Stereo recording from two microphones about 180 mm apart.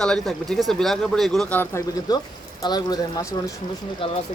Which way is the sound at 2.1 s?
20° left (ahead or behind).